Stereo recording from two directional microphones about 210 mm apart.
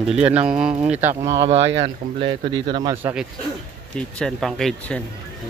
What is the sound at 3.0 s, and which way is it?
Speech, 10° right (ahead or behind).